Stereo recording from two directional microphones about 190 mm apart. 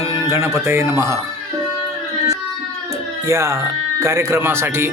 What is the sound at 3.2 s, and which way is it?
Music, 15° right (ahead or behind).